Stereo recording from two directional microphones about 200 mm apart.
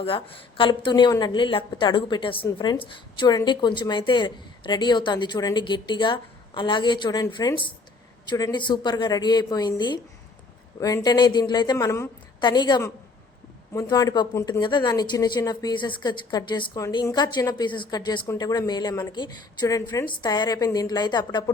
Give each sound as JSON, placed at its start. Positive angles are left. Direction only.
{"t": 0.0, "sound": "a woman's voice", "side_deg": 25}